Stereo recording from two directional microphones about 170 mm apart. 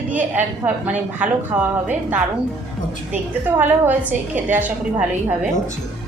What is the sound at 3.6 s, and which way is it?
A woman's voice, 10° right (ahead or behind).